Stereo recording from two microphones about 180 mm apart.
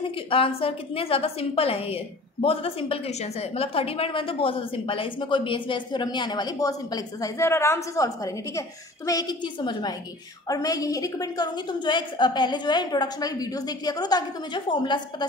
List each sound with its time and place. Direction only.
0.0 s a woman's voice: 30° left (ahead or behind)